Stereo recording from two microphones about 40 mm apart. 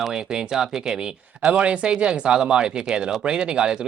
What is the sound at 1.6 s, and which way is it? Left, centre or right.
Speech, right.